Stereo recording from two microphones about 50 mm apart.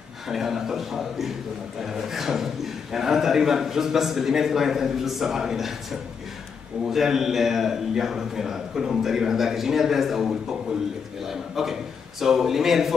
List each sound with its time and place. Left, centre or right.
0.3 s a man's voice: centre